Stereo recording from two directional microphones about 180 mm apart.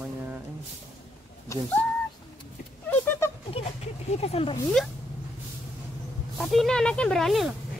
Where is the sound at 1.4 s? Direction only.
15° left (ahead or behind).